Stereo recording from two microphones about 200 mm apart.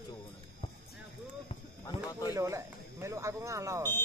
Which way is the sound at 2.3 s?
15° right (ahead or behind).